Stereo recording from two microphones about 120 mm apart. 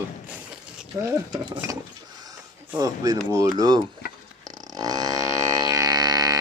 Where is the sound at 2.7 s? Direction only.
30° right (ahead or behind).